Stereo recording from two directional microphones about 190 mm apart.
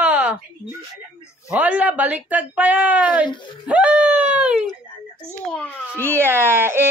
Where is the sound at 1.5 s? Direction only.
5° right (ahead or behind).